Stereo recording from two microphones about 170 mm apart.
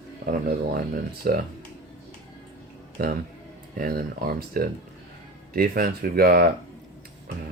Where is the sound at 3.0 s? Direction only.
60° right (ahead or behind).